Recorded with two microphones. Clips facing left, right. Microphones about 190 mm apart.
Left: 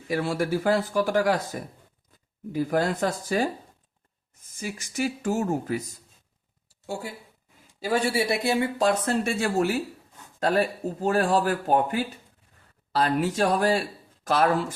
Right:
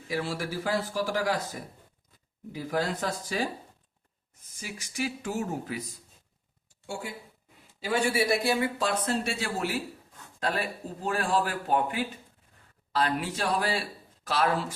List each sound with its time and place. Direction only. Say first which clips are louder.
0.1 s speech: left 6 dB; 55° left (ahead or behind)
4.6 s speech: left 5 dB; 45° left (ahead or behind)
6.7 s a sound: left 4 dB; 40° left (ahead or behind)
7.8 s speech: left 2 dB; 35° left (ahead or behind)
8.8 s speech: left 5 dB; 45° left (ahead or behind)